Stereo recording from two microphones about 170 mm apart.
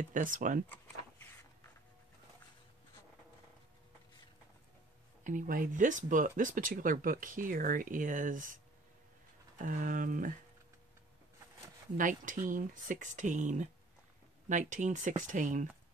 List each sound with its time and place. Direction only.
0.0 s speech: 50° right (ahead or behind)
5.2 s speech: 50° right (ahead or behind)
9.6 s speech: 55° right (ahead or behind)
12.0 s speech: 50° right (ahead or behind)